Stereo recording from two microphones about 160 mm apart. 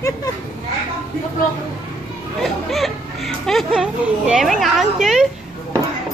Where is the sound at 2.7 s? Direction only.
Centre (ahead or behind).